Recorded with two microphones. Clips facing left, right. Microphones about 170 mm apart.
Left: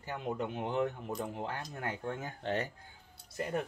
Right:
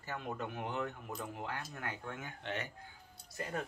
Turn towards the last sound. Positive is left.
turn(degrees=20)  # may be behind; listen again after turning